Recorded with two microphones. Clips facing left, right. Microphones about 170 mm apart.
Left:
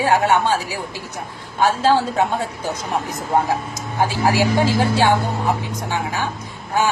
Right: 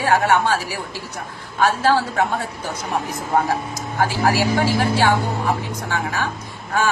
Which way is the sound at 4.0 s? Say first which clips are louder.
Left 1 dB; 15° left (ahead or behind).